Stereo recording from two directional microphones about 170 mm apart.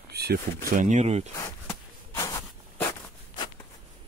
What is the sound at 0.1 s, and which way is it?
Speech, 70° right (ahead or behind).